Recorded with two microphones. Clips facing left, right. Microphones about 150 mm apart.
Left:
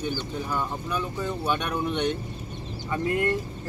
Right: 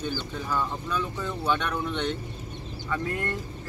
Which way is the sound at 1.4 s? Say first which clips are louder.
Right 1 dB; 15° left (ahead or behind).